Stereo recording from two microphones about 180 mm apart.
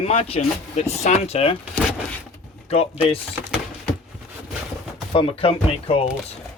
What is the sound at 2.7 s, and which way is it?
Speech, 35° left (ahead or behind).